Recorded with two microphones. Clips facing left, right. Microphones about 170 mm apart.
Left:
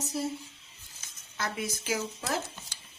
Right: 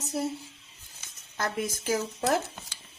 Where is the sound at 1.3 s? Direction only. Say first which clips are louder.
Right 3 dB; 50° right (ahead or behind).